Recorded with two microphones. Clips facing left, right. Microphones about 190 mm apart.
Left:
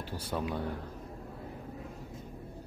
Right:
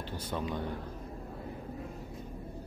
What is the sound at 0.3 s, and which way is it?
Speech, 10° left (ahead or behind).